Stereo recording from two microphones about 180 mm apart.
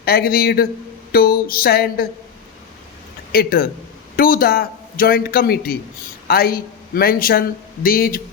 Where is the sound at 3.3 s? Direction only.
55° left (ahead or behind).